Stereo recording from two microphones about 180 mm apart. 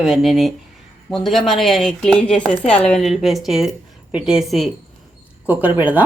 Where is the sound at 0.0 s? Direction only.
Centre (ahead or behind).